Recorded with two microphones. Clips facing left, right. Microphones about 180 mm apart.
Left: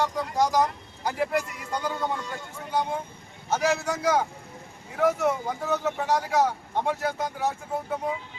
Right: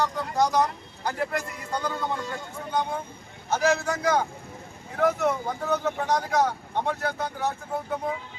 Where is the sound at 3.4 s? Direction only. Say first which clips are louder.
Right 1 dB; 5° left (ahead or behind).